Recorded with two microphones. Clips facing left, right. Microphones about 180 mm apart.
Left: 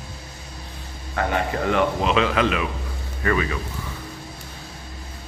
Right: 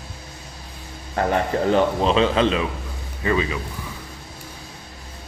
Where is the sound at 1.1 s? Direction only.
35° right (ahead or behind); by 3.5 s 20° right (ahead or behind).